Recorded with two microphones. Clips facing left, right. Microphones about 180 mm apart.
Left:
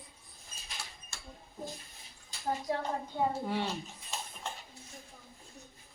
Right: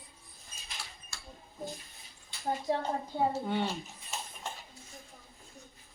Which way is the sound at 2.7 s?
30° right (ahead or behind).